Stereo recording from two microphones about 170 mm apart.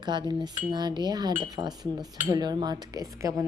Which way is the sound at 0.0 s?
25° right (ahead or behind).